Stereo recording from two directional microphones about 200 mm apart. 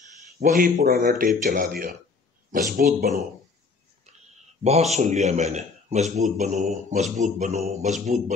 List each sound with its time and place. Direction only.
0.4 s speech: 45° right (ahead or behind)
4.9 s mantra: 35° right (ahead or behind)